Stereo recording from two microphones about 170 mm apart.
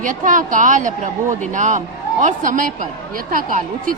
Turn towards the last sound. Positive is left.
turn(degrees=-50)  # may be behind; listen again after turning